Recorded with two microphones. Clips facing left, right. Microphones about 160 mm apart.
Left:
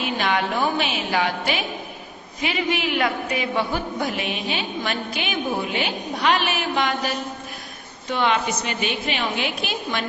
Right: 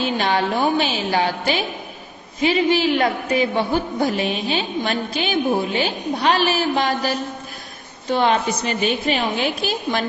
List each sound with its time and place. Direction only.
0.0 s music: 30° right (ahead or behind)
2.4 s a woman's voice: 30° right (ahead or behind)
8.1 s a woman's voice: 35° right (ahead or behind)